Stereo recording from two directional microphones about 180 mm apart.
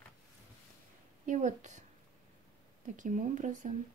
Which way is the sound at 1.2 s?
40° right (ahead or behind).